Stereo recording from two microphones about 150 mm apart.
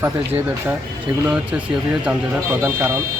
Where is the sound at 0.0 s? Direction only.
15° right (ahead or behind).